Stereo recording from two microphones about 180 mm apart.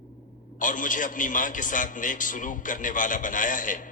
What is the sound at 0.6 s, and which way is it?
A man's voice, 45° left (ahead or behind).